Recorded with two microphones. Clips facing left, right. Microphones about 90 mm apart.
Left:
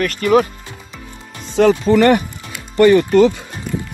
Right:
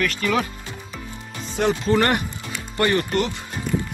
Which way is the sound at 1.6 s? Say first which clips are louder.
Left 9 dB; 90° left.